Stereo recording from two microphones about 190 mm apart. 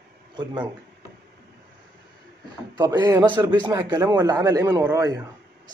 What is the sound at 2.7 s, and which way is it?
A man's voice, 20° right (ahead or behind).